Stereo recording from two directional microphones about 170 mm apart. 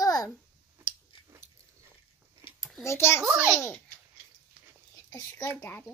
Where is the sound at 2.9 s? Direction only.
15° left (ahead or behind).